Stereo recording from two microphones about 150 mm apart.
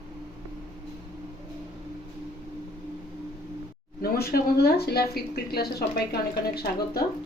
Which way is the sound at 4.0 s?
90° left.